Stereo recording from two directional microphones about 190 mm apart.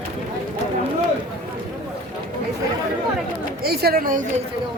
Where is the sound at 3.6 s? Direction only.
55° right (ahead or behind).